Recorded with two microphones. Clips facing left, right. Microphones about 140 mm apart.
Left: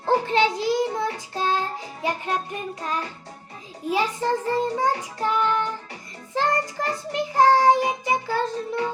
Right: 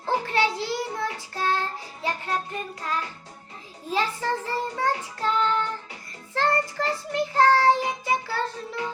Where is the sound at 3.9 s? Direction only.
15° left (ahead or behind).